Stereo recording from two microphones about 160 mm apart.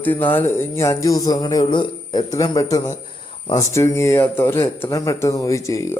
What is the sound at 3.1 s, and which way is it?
Cricket, 35° left (ahead or behind).